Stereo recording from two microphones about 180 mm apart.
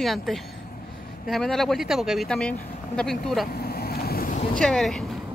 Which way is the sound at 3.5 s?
60° left (ahead or behind).